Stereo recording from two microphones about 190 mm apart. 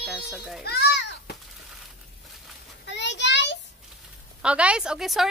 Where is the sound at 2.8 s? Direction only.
70° left (ahead or behind).